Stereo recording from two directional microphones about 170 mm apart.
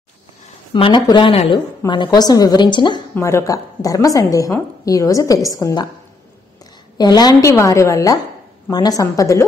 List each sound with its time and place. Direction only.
0.7 s a woman's voice: 30° left (ahead or behind)
7.0 s a woman's voice: 25° left (ahead or behind)